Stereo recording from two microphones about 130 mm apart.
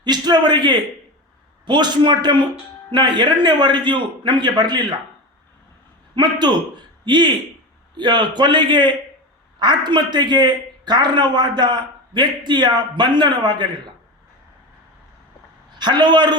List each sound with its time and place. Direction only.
0.0 s a man's voice: 35° right (ahead or behind)
6.2 s a man's voice: 35° right (ahead or behind)
15.8 s a man's voice: 35° right (ahead or behind)